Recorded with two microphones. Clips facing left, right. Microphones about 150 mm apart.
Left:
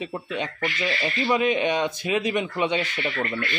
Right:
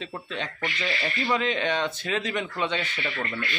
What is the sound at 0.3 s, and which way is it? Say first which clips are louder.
Speech: left 3 dB; 15° left (ahead or behind).